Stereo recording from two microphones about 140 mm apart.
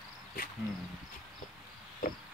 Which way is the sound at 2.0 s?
80° left.